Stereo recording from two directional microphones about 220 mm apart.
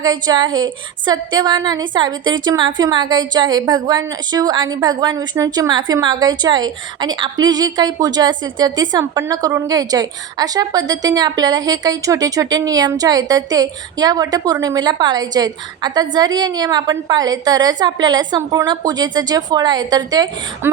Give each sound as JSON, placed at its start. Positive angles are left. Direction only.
{"t": 0.0, "sound": "a woman's voice", "side_deg": -20}